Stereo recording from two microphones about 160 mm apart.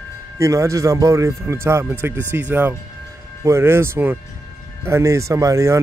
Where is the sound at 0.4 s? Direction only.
20° right (ahead or behind).